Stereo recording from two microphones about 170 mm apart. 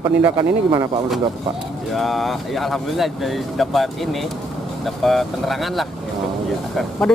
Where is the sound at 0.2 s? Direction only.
25° right (ahead or behind).